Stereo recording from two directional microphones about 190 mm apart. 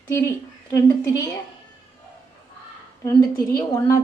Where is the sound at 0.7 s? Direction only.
15° left (ahead or behind).